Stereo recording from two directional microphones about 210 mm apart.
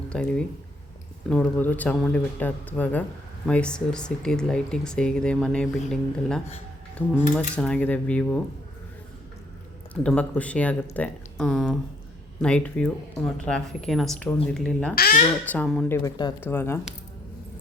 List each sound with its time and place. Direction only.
0.1 s a man's voice: 5° left (ahead or behind)
9.9 s a man's voice: 5° left (ahead or behind)
14.9 s speech: 45° left (ahead or behind)
15.4 s speech: 5° left (ahead or behind)
16.0 s a man's voice: 15° left (ahead or behind)